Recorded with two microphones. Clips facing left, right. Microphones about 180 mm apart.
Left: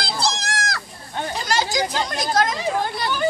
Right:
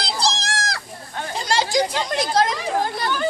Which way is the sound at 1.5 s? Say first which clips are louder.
Right 3 dB; 30° right (ahead or behind).